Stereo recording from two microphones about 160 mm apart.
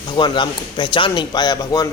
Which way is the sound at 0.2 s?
30° left (ahead or behind).